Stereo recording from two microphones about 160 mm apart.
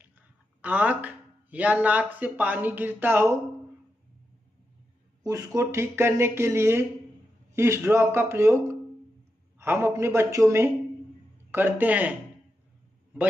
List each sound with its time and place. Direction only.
0.6 s speech: 10° right (ahead or behind)
5.2 s speech: 20° right (ahead or behind)